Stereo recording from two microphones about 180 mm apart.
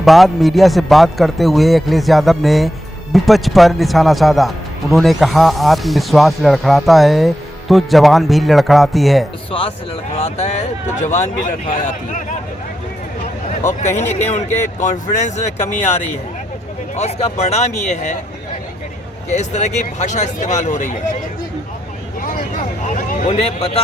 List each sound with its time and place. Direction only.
0.0 s a man's voice: centre (ahead or behind)
9.5 s speech: 30° left (ahead or behind)
13.7 s speech: 40° left (ahead or behind)
16.9 s speech: 35° left (ahead or behind)
19.3 s speech: 40° left (ahead or behind)
22.2 s vehicle: 50° left (ahead or behind)
23.3 s speech: 35° left (ahead or behind)